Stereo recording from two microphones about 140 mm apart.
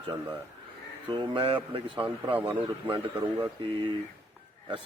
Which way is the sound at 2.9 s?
40° right (ahead or behind).